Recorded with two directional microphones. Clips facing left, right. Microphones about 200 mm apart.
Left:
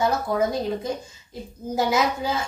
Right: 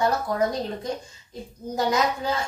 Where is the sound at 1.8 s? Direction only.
Centre (ahead or behind).